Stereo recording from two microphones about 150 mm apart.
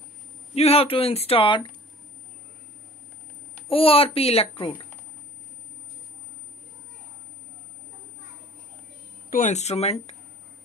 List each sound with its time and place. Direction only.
0.6 s a child's voice: 40° left (ahead or behind)
3.6 s a child's voice: 40° left (ahead or behind)
9.3 s speech: 55° left (ahead or behind)